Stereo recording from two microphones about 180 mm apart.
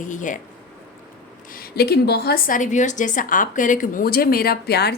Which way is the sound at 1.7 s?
60° left (ahead or behind).